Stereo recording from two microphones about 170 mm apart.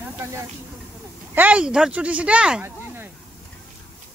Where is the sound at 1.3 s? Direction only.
10° right (ahead or behind).